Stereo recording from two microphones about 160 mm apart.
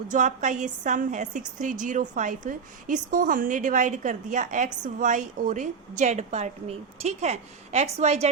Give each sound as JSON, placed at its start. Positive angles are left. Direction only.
{"t": 0.1, "sound": "a woman's voice", "side_deg": -50}